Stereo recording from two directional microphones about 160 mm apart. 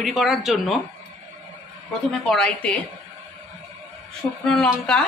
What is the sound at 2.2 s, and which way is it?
Speech, 5° left (ahead or behind).